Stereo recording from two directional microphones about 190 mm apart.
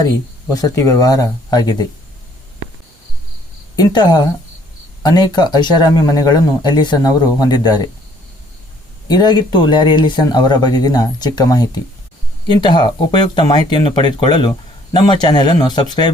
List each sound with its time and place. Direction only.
0.5 s speech: 15° left (ahead or behind)
3.8 s speech: 20° left (ahead or behind)
9.0 s speech: 20° left (ahead or behind)